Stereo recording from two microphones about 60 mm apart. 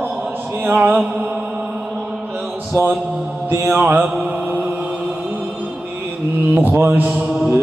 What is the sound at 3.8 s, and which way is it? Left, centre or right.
Speech, right.